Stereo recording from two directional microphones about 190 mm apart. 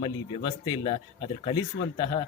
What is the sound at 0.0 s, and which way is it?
Speech, 25° left (ahead or behind).